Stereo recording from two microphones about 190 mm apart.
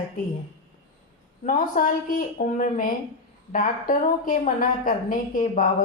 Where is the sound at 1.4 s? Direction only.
45° left (ahead or behind).